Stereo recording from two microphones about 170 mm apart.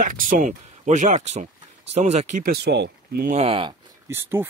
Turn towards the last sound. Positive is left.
turn(degrees=-15)  # may be behind; listen again after turning